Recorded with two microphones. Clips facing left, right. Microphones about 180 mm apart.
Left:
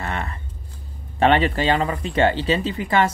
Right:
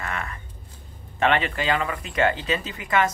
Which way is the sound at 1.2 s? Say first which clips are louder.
Left 5 dB; 35° left (ahead or behind).